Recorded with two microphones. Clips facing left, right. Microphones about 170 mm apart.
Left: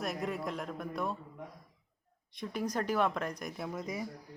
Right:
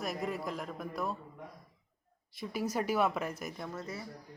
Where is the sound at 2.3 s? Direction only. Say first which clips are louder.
Even; 5° right (ahead or behind); by 4.0 s 15° left (ahead or behind).